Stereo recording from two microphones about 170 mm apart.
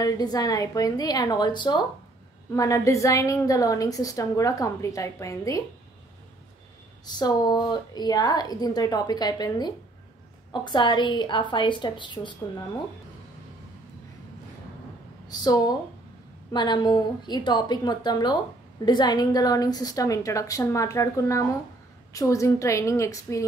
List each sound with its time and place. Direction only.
0.0 s a woman's voice: 20° left (ahead or behind)
7.2 s a woman's voice: 25° left (ahead or behind)
15.2 s a woman's voice: 25° left (ahead or behind)